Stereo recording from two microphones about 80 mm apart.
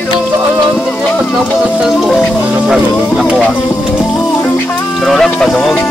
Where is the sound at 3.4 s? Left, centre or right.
Centre.